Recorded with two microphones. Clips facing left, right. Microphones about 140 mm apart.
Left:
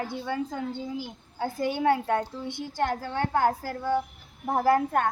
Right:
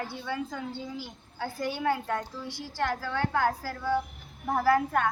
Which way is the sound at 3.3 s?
45° left (ahead or behind).